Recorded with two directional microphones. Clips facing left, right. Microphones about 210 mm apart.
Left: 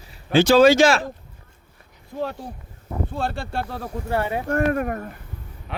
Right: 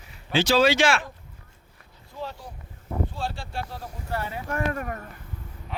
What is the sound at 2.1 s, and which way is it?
Speech, 60° left (ahead or behind).